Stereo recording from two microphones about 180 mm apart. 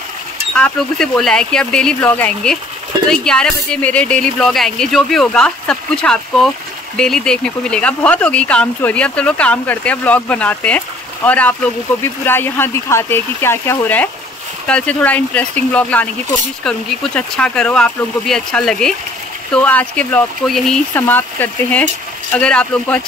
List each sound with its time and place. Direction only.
0.6 s speech: 5° left (ahead or behind)